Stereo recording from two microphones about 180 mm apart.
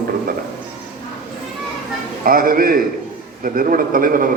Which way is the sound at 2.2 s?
55° right (ahead or behind).